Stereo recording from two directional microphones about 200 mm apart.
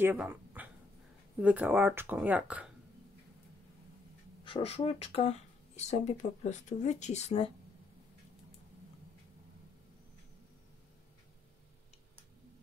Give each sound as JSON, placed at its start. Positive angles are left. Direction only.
{"t": 0.0, "sound": "speech", "side_deg": -10}
{"t": 4.5, "sound": "speech", "side_deg": 30}